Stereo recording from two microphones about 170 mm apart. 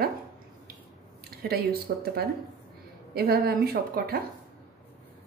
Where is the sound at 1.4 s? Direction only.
65° right (ahead or behind).